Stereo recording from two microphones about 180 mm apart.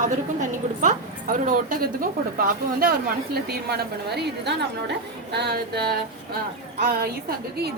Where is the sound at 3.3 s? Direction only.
65° right (ahead or behind).